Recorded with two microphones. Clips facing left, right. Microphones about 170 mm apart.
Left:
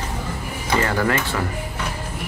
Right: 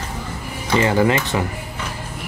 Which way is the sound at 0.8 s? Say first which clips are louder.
Right 5 dB; 15° right (ahead or behind).